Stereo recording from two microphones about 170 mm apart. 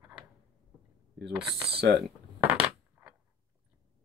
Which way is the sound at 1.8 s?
75° right (ahead or behind).